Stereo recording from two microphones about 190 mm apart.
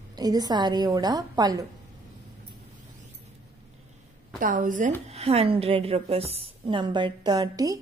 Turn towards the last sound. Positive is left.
turn(degrees=-20)  # may be behind; listen again after turning